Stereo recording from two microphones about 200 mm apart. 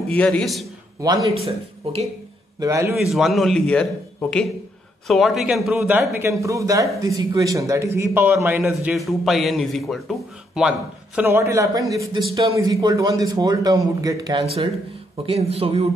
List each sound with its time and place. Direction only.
0.1 s a man's voice: 5° left (ahead or behind)
1.4 s speech: 30° right (ahead or behind)
2.6 s speech: 15° right (ahead or behind)
3.0 s a man's voice: centre (ahead or behind); by 15.9 s 30° right (ahead or behind)